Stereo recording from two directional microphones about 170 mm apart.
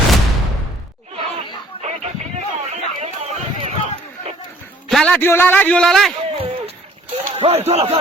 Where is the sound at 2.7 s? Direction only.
40° right (ahead or behind).